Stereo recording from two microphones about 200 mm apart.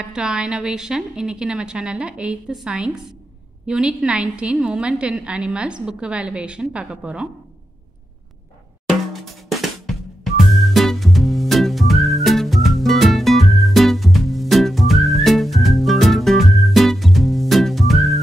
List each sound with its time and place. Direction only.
0.0 s a woman's voice: 5° right (ahead or behind)
8.8 s snare drum: centre (ahead or behind)